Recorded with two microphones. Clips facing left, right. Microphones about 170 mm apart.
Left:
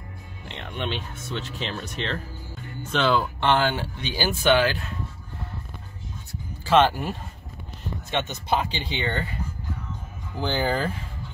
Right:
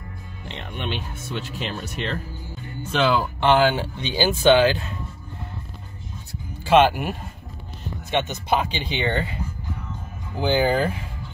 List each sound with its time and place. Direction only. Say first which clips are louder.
0.7 s speech: even; 5° right (ahead or behind); by 4.8 s 25° right (ahead or behind)
6.6 s speech: right 3 dB; 15° right (ahead or behind)
10.3 s speech: right 5 dB; 15° right (ahead or behind)